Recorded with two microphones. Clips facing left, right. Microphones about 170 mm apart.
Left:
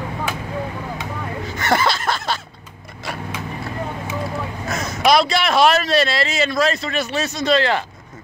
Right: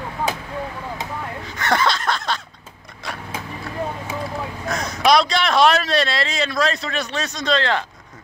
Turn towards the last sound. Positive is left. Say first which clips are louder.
# left 3 dB
turn(degrees=5)  # may be behind; listen again after turning